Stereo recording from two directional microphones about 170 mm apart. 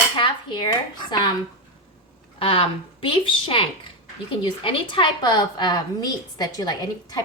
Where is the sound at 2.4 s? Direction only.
30° left (ahead or behind).